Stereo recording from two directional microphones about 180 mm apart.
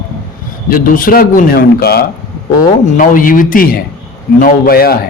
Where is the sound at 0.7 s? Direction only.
50° left (ahead or behind).